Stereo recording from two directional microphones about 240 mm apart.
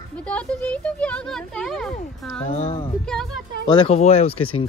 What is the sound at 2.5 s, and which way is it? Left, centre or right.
Speech, left.